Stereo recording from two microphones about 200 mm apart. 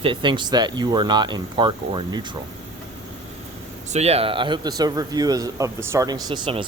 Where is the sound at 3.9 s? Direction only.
30° right (ahead or behind).